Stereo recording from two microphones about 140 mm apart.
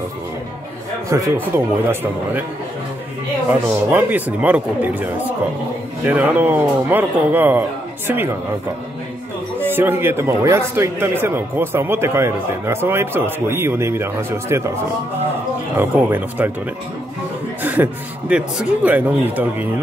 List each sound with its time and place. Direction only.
1.1 s speech: 20° right (ahead or behind)
3.6 s speech: 10° right (ahead or behind)
9.7 s speech: 15° right (ahead or behind)
15.8 s speech: 15° right (ahead or behind)
17.6 s chuckle: 15° right (ahead or behind)
18.3 s speech: 10° right (ahead or behind)